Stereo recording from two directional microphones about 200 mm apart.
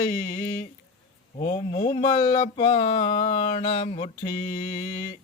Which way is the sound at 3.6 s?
35° left (ahead or behind).